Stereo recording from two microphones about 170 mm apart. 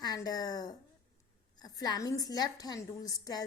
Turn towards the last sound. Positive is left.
turn(degrees=20)  # may be behind; listen again after turning